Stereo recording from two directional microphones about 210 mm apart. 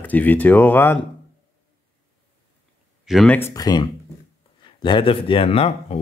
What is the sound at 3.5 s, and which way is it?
Speech, 20° left (ahead or behind).